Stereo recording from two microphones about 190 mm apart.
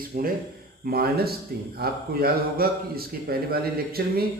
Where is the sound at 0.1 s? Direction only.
45° right (ahead or behind).